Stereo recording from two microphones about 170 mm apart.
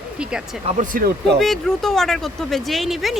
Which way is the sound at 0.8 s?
60° right (ahead or behind).